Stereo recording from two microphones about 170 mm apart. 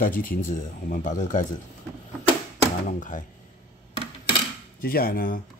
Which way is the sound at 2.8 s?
50° left (ahead or behind).